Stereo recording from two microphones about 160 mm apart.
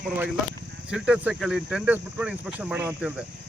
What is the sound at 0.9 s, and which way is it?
Speech, 5° right (ahead or behind).